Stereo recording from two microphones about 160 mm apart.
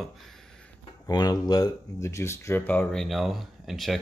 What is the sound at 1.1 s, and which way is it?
Speech, 25° left (ahead or behind).